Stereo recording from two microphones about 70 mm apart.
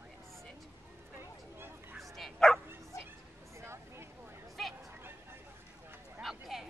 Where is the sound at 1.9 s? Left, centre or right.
Centre.